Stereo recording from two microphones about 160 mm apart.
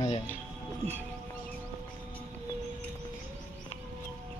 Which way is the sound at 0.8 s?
45° right (ahead or behind).